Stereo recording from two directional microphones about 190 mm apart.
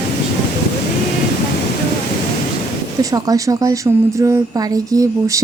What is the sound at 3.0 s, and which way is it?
A woman's voice, 20° right (ahead or behind).